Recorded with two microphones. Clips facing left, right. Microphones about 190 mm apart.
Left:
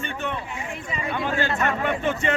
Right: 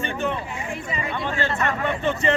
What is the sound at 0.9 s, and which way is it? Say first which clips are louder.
Speech: left 2 dB; centre (ahead or behind).